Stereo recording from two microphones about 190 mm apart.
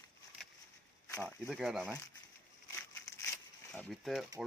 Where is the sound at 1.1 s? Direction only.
5° left (ahead or behind).